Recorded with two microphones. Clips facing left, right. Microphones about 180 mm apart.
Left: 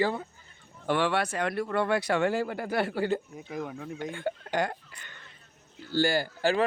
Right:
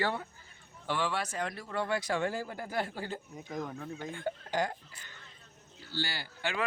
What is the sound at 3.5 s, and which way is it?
Speech, 5° left (ahead or behind).